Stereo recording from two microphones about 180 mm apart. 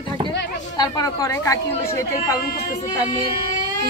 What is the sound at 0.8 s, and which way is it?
Speech, 20° left (ahead or behind).